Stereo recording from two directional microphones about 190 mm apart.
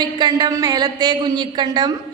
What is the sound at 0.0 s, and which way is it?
A woman's voice, 20° right (ahead or behind).